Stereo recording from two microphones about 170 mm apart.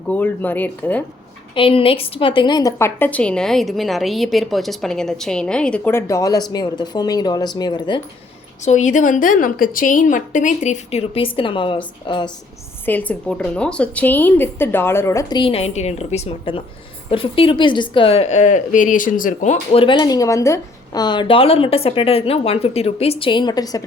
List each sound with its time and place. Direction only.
0.1 s a woman's voice: 10° left (ahead or behind)
1.5 s a woman's voice: 30° left (ahead or behind)
8.6 s a woman's voice: 45° left (ahead or behind); by 12.3 s 25° left (ahead or behind)
12.8 s a woman's voice: 10° left (ahead or behind); by 19.5 s 50° left (ahead or behind)
19.7 s a woman's voice: 30° left (ahead or behind)